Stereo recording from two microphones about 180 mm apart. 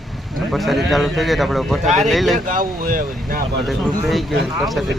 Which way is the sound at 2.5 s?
50° right (ahead or behind).